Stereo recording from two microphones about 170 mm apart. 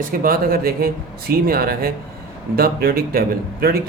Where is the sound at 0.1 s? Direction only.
60° right (ahead or behind).